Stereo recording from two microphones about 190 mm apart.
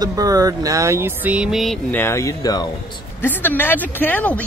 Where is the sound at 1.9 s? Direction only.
15° left (ahead or behind).